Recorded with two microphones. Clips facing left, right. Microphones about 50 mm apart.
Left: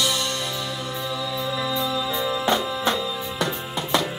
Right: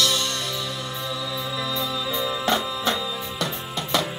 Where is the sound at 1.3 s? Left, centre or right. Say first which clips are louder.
Left 3 dB; centre.